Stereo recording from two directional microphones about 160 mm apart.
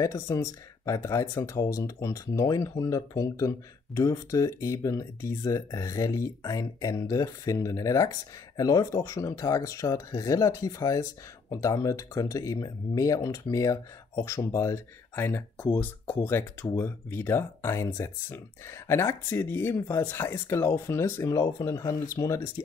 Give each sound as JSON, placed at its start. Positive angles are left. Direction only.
{"t": 0.0, "sound": "speech", "side_deg": 20}